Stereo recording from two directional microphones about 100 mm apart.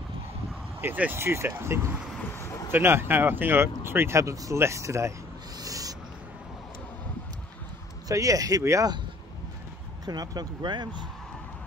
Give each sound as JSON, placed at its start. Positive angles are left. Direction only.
{"t": 0.7, "sound": "speech", "side_deg": -20}
{"t": 5.6, "sound": "owl", "side_deg": -35}
{"t": 8.1, "sound": "speech", "side_deg": -35}
{"t": 10.0, "sound": "speech", "side_deg": -45}